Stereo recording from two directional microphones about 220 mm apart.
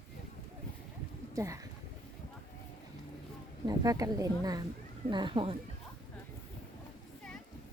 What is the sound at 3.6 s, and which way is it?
Speech, 15° right (ahead or behind).